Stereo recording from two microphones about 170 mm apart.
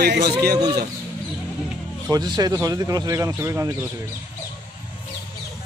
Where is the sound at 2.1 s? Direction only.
25° right (ahead or behind).